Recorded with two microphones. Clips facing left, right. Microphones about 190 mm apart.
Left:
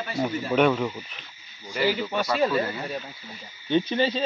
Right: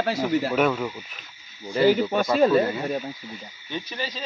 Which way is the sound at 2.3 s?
40° right (ahead or behind).